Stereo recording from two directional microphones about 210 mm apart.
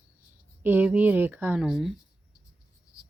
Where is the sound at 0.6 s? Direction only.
10° right (ahead or behind).